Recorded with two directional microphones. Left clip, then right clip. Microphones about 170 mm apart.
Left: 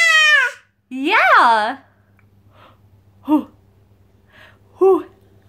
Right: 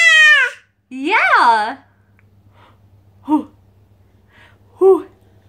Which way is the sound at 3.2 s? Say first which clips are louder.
Even; 20° left (ahead or behind).